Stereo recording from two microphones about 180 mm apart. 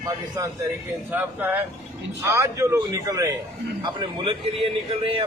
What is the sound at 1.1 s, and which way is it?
Speech, 10° right (ahead or behind).